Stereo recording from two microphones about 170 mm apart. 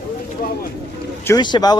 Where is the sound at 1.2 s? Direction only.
25° left (ahead or behind).